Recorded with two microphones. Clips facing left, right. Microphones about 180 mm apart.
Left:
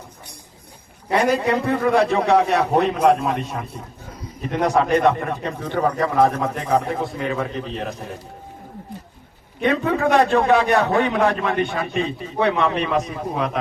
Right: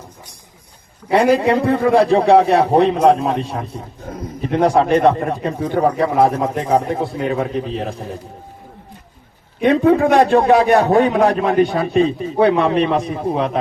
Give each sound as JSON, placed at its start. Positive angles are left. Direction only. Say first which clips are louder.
{"t": 1.1, "sound": "a man's voice", "louder": "right 5 dB", "side_deg": -30}
{"t": 9.6, "sound": "a man's voice", "louder": "right 7 dB", "side_deg": -35}